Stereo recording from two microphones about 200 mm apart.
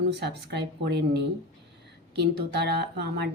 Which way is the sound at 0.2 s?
55° right (ahead or behind).